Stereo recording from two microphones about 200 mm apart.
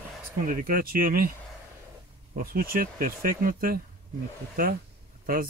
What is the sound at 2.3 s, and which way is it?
Speech, 45° right (ahead or behind).